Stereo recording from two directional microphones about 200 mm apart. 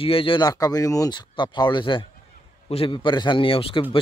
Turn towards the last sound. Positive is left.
turn(degrees=25)  # may be behind; listen again after turning